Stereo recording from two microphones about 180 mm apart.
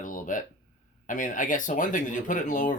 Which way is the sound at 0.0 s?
50° left (ahead or behind).